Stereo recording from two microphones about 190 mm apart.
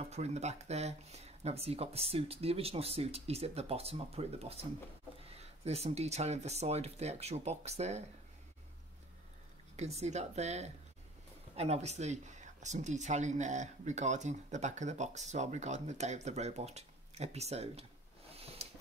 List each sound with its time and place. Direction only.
0.1 s speech: 35° right (ahead or behind)
9.8 s speech: 35° right (ahead or behind)
18.3 s a sound: 30° right (ahead or behind)